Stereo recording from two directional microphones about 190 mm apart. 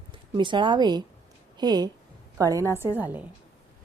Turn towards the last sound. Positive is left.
turn(degrees=-10)  # may be behind; listen again after turning